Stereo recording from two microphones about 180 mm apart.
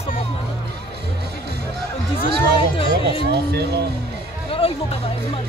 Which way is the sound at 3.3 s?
65° right (ahead or behind).